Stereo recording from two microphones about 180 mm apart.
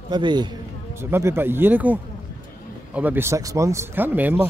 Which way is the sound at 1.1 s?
10° right (ahead or behind).